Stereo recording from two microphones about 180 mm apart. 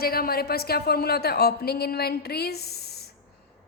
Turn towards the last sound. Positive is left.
turn(degrees=65)  # may be behind; listen again after turning